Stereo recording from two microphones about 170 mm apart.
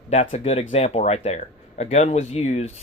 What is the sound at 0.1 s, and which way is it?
Speech, 40° left (ahead or behind).